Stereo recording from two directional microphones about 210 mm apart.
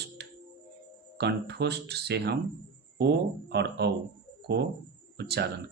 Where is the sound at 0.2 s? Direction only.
50° right (ahead or behind).